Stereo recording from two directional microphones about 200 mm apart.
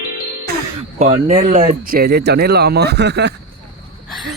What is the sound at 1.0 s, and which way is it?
Speech, 35° right (ahead or behind).